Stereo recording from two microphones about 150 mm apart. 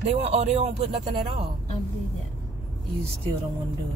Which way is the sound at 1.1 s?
30° right (ahead or behind).